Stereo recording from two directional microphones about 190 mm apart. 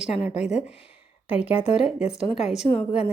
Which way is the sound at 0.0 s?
5° right (ahead or behind).